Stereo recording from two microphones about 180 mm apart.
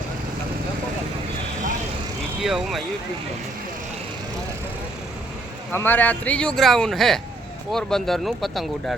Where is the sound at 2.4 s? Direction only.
Centre (ahead or behind).